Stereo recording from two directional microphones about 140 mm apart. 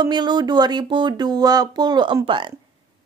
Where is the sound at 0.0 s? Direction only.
30° right (ahead or behind).